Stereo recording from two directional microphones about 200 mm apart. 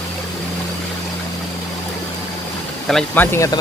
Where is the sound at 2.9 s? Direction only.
Centre (ahead or behind).